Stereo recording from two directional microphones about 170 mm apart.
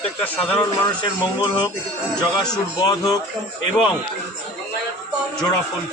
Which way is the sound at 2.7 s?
20° left (ahead or behind).